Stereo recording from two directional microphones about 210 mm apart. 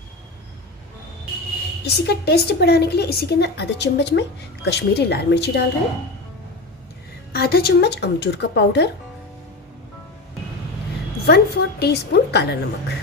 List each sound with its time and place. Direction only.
1.9 s speech: 50° left (ahead or behind)
7.3 s speech: 50° left (ahead or behind)
11.2 s speech: 50° left (ahead or behind)